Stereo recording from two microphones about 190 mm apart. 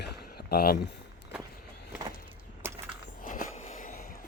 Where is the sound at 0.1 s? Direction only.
55° left (ahead or behind).